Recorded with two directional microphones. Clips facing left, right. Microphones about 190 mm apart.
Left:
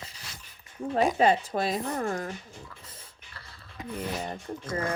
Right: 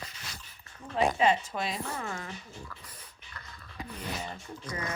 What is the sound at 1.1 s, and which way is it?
Speech, 40° left (ahead or behind).